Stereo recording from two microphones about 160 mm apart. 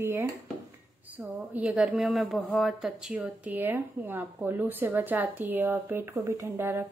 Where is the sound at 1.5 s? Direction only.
10° right (ahead or behind).